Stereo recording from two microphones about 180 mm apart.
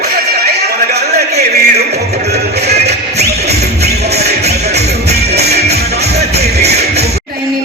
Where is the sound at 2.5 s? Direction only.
65° right (ahead or behind).